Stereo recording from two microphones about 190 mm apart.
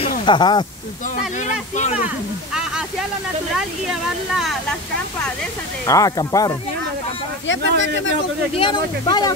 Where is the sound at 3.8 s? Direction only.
Centre (ahead or behind).